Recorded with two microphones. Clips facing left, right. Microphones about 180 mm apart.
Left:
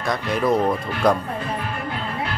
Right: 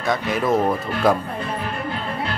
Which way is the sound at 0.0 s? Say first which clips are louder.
Even; centre (ahead or behind).